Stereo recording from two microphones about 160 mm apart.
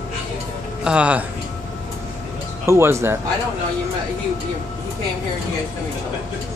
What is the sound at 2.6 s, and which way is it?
Speech, 15° right (ahead or behind).